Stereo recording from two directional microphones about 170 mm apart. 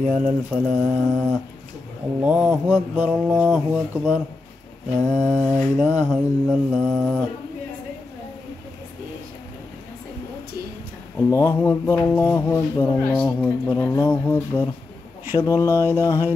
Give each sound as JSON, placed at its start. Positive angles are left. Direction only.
{"t": 0.5, "sound": "mantra", "side_deg": -5}
{"t": 5.0, "sound": "mantra", "side_deg": -45}
{"t": 5.3, "sound": "mantra", "side_deg": -5}
{"t": 11.1, "sound": "a sound", "side_deg": 15}